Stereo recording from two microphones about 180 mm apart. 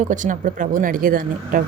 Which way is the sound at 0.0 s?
45° right (ahead or behind).